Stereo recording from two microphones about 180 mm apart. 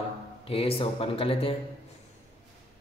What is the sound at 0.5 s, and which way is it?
Speech, 30° left (ahead or behind).